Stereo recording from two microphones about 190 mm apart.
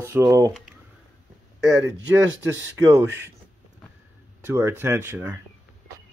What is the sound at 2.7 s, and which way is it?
Speech, 10° right (ahead or behind).